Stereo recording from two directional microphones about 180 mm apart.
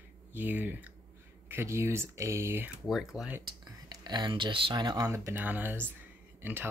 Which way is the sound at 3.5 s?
25° right (ahead or behind).